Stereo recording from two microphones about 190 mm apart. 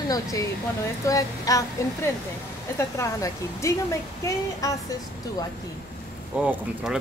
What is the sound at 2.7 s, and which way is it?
A woman's voice, 15° left (ahead or behind).